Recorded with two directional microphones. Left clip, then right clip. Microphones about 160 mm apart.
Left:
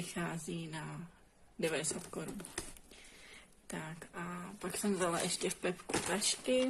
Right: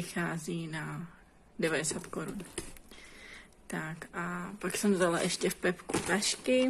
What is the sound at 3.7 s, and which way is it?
Speech, centre (ahead or behind).